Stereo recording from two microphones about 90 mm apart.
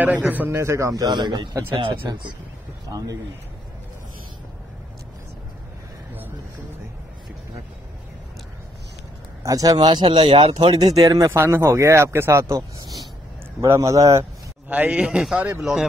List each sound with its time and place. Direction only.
0.0 s speech: 20° right (ahead or behind)
0.6 s speech: 35° right (ahead or behind); by 1.6 s 55° right (ahead or behind)
2.9 s speech: 45° right (ahead or behind)
9.4 s speech: 40° right (ahead or behind)
10.0 s speech: 65° right (ahead or behind); by 11.3 s 40° right (ahead or behind)
11.3 s a man's voice: 30° right (ahead or behind)
14.7 s a man's voice: 15° right (ahead or behind)
15.6 s speech: 5° right (ahead or behind)